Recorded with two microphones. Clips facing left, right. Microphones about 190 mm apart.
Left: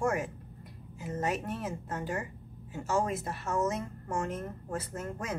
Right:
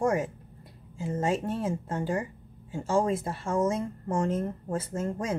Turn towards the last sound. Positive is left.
turn(degrees=-25)  # may be behind; listen again after turning